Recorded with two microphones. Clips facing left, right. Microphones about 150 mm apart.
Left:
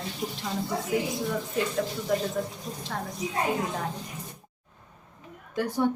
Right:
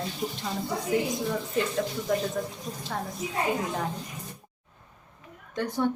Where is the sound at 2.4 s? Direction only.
5° left (ahead or behind).